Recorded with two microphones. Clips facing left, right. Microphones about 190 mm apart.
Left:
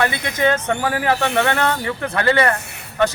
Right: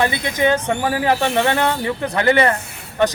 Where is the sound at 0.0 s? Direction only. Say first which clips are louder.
Right 1 dB; 15° right (ahead or behind).